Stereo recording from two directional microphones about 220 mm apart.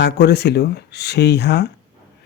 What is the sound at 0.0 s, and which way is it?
Speech, 50° left (ahead or behind).